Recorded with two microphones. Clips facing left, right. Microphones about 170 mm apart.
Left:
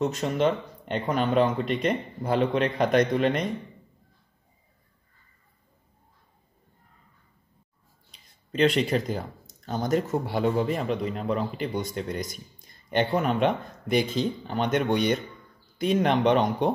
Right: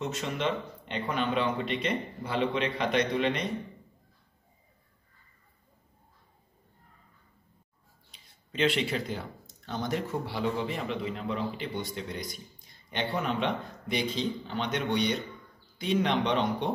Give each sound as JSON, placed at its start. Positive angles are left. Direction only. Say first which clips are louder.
{"t": 0.0, "sound": "speech", "louder": "left 7 dB", "side_deg": 40}
{"t": 8.1, "sound": "speech", "louder": "left 8 dB", "side_deg": 40}